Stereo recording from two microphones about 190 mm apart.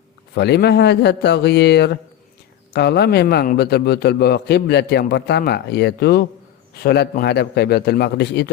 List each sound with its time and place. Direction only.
0.3 s a man's voice: 60° left (ahead or behind)